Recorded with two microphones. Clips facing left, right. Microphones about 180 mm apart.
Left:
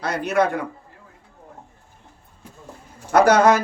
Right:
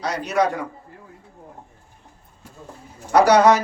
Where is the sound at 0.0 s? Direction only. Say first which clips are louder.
Left 1 dB; 55° left (ahead or behind).